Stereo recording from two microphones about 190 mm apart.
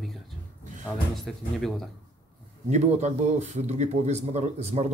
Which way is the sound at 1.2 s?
Centre (ahead or behind).